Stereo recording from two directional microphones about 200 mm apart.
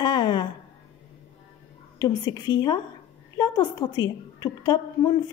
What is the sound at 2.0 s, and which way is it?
A woman's voice, 20° left (ahead or behind).